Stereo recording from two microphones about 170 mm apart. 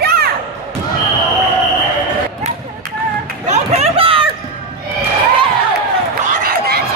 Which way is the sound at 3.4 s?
40° right (ahead or behind).